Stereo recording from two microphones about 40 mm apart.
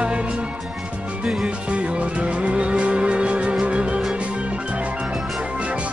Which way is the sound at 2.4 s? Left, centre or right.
Right.